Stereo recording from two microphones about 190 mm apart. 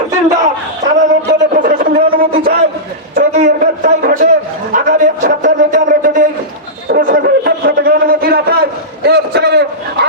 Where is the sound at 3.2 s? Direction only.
40° right (ahead or behind).